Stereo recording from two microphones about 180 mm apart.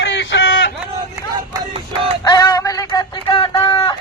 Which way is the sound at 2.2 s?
20° left (ahead or behind).